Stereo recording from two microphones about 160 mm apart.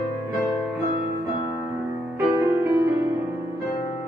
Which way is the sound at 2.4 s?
20° right (ahead or behind).